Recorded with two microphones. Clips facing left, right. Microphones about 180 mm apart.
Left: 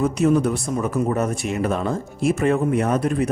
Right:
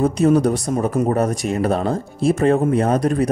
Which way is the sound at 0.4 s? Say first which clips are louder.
Right 3 dB; 35° right (ahead or behind).